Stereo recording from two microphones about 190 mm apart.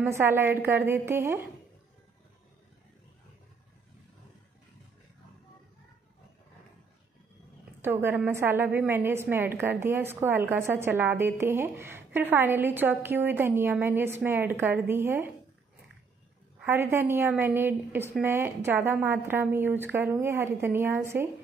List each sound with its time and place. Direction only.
0.0 s a woman's voice: 10° right (ahead or behind)
7.8 s a woman's voice: 10° right (ahead or behind)
16.5 s a woman's voice: 10° right (ahead or behind)